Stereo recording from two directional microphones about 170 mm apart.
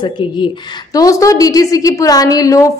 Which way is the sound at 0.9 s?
20° left (ahead or behind).